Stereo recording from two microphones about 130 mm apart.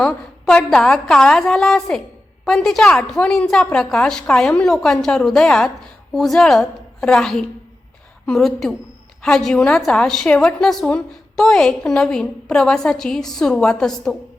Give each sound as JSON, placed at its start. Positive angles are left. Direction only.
{"t": 0.0, "sound": "a woman's voice", "side_deg": 5}